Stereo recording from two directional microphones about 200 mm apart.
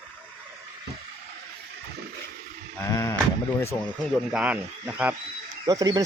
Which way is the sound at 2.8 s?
15° left (ahead or behind).